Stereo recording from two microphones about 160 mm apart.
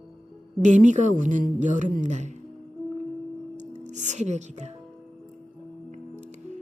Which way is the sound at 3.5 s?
50° right (ahead or behind).